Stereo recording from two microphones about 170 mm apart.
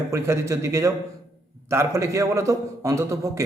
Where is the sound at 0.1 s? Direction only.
15° right (ahead or behind).